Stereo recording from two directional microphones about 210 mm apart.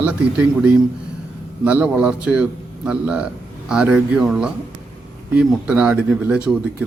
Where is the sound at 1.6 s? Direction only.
5° right (ahead or behind).